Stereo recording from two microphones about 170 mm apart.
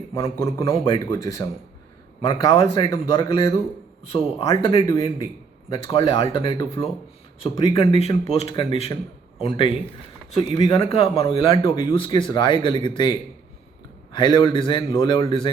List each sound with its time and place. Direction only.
0.1 s speech: 20° left (ahead or behind)